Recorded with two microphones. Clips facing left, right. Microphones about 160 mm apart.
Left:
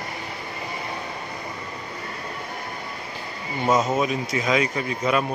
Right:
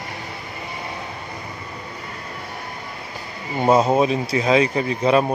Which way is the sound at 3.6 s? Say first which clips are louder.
Right 5 dB; 30° right (ahead or behind).